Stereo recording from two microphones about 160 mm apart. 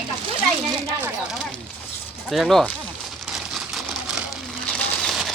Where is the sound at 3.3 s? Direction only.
Centre (ahead or behind).